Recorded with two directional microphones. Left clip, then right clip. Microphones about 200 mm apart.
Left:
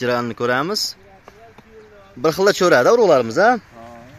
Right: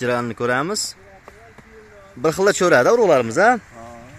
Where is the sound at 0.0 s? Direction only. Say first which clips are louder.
Left 1 dB; centre (ahead or behind).